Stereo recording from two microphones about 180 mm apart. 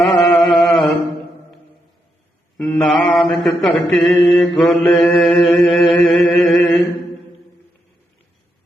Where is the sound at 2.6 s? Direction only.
5° left (ahead or behind).